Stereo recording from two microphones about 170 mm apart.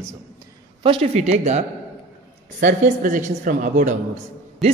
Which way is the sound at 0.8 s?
35° right (ahead or behind).